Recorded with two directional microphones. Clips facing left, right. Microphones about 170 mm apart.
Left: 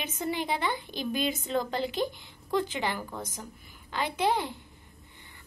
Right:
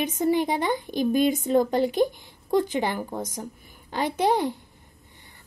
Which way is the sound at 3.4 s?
40° right (ahead or behind).